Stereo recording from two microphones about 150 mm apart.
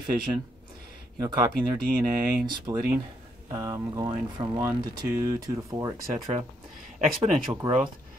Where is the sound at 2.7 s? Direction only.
25° right (ahead or behind).